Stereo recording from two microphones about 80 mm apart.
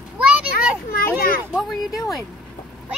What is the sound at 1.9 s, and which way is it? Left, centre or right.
Speech, left.